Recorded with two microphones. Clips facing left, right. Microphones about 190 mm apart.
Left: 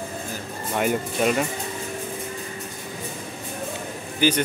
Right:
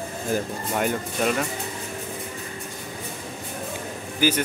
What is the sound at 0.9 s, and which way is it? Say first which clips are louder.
Speech: left 2 dB; 10° left (ahead or behind).